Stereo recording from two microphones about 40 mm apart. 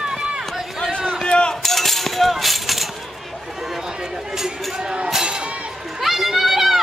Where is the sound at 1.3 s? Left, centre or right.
Left.